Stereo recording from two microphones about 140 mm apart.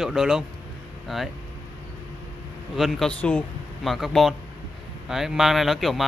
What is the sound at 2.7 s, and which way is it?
Speech, centre (ahead or behind).